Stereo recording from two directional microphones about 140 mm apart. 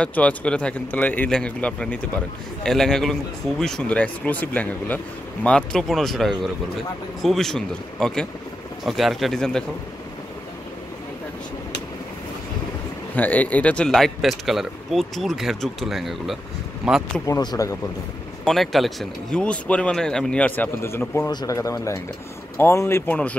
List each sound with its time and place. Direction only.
0.0 s a man's voice: 10° left (ahead or behind)
13.1 s a man's voice: 10° left (ahead or behind); by 17.0 s 5° right (ahead or behind)
17.3 s speech: 25° left (ahead or behind)
18.4 s speech: centre (ahead or behind)
21.3 s speech: 25° left (ahead or behind)